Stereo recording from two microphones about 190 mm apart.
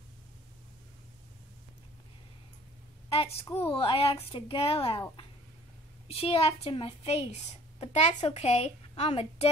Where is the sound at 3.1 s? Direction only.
30° left (ahead or behind).